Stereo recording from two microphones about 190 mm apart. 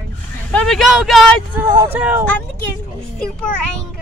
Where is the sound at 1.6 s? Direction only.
15° right (ahead or behind).